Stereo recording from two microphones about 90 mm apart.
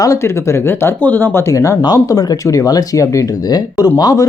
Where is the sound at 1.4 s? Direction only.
35° left (ahead or behind).